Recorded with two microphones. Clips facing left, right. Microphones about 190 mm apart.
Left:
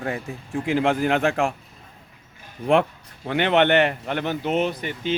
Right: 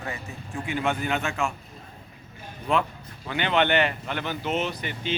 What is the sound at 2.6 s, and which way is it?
Speech, 60° left (ahead or behind).